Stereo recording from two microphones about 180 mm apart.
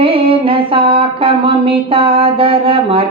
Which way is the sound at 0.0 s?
30° right (ahead or behind).